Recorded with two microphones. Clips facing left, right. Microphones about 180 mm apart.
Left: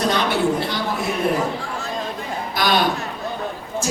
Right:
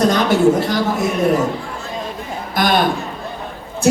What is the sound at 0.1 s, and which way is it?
Speech, 45° right (ahead or behind).